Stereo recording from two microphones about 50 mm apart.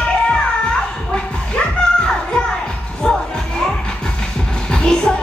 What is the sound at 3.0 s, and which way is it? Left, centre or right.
Music, centre.